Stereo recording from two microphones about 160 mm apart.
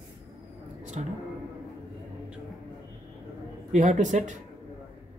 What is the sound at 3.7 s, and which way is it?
Speech, 50° right (ahead or behind).